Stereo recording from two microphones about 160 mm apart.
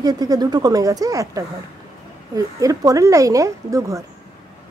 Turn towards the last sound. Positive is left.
turn(degrees=-20)  # may be behind; listen again after turning